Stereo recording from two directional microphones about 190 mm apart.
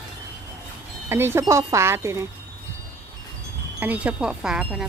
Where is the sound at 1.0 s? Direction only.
10° right (ahead or behind).